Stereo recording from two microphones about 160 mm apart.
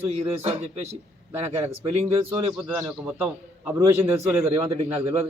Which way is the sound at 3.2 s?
15° right (ahead or behind).